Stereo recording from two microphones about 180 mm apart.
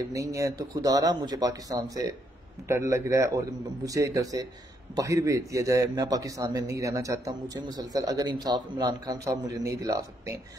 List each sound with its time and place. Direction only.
0.1 s a man's voice: 20° right (ahead or behind)